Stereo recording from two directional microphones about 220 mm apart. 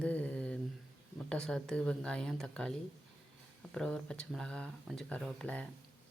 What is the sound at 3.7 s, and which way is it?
Speech, 5° left (ahead or behind).